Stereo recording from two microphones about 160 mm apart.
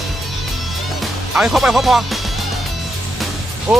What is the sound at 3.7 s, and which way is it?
Speech, 5° right (ahead or behind).